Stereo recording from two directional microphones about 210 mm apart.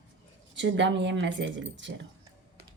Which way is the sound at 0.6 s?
60° right (ahead or behind).